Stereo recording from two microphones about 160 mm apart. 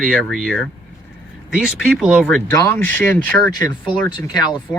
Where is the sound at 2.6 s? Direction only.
15° left (ahead or behind).